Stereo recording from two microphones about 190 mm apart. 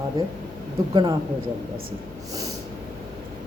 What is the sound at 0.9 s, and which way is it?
Speech, 25° right (ahead or behind).